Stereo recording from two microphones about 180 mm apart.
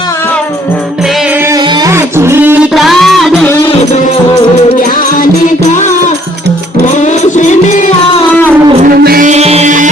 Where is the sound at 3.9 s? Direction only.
40° left (ahead or behind).